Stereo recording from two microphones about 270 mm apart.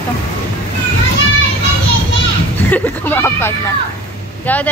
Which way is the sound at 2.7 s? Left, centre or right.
Centre.